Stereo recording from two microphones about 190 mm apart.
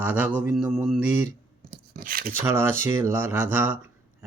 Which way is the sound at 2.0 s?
50° right (ahead or behind).